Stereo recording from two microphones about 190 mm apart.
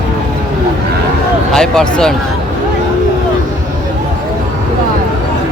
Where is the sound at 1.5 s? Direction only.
5° left (ahead or behind).